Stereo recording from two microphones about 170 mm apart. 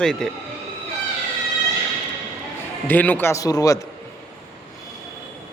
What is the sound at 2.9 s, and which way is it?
Speech, 10° left (ahead or behind).